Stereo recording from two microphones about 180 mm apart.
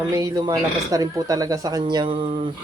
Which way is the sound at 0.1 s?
20° right (ahead or behind).